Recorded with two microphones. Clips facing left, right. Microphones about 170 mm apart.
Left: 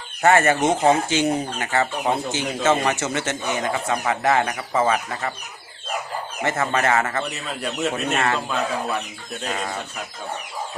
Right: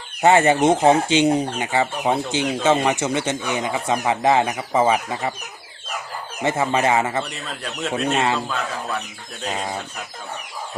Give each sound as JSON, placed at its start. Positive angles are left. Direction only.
{"t": 0.2, "sound": "speech", "side_deg": -15}
{"t": 6.4, "sound": "speech", "side_deg": -15}
{"t": 7.3, "sound": "speech", "side_deg": 10}